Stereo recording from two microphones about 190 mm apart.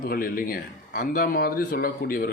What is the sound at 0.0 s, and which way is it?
Speech, 50° left (ahead or behind).